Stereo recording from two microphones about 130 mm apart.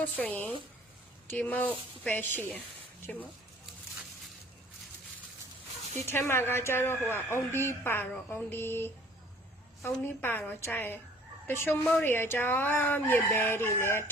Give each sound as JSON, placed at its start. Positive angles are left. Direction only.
{"t": 0.0, "sound": "speech", "side_deg": 10}
{"t": 6.1, "sound": "a woman's voice", "side_deg": 20}